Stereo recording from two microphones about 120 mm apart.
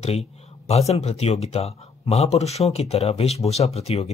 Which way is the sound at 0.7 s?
60° left (ahead or behind).